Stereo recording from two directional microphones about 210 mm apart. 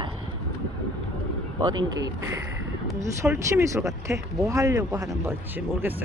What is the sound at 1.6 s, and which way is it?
Speech, 20° right (ahead or behind).